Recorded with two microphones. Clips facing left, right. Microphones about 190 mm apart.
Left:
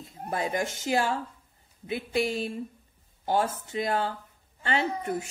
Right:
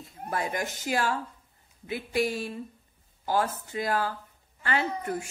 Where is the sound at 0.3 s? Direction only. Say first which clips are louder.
Left 2 dB; 25° left (ahead or behind).